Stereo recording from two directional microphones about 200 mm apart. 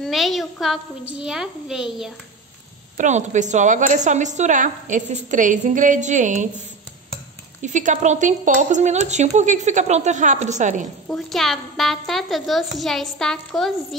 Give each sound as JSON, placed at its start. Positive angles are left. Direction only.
{"t": 0.0, "sound": "a woman's voice", "side_deg": 0}
{"t": 3.0, "sound": "a woman's voice", "side_deg": -35}
{"t": 7.6, "sound": "a woman's voice", "side_deg": -40}
{"t": 11.1, "sound": "a woman's voice", "side_deg": 0}